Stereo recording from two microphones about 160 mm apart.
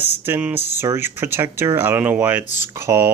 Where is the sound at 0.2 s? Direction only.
15° right (ahead or behind).